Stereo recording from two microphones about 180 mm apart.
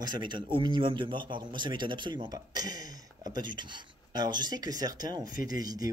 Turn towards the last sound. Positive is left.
turn(degrees=-20)  # may be behind; listen again after turning